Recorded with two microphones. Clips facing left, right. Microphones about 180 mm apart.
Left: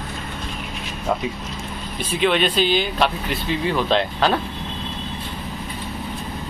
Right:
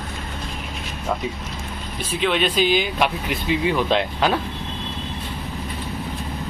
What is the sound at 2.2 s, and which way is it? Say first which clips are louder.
Speech: left 1 dB; 5° right (ahead or behind).